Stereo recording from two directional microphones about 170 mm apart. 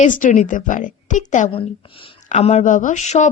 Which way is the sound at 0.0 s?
50° left (ahead or behind).